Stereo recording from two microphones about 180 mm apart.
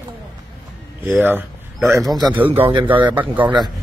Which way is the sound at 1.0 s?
10° right (ahead or behind).